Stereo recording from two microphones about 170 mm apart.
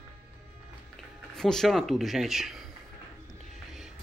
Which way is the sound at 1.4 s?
5° left (ahead or behind).